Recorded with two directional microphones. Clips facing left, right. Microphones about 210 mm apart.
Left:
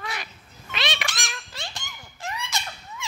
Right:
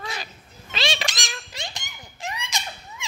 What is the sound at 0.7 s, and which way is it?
Cat, 30° right (ahead or behind).